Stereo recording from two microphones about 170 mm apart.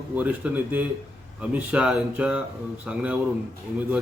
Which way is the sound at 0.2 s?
10° right (ahead or behind).